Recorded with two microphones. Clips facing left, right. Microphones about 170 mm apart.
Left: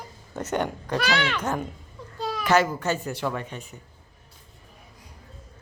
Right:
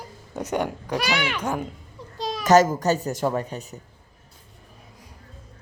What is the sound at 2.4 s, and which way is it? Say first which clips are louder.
A child's voice: right 5 dB; 40° right (ahead or behind).